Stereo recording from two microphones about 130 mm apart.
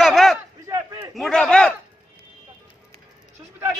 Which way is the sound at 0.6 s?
25° right (ahead or behind).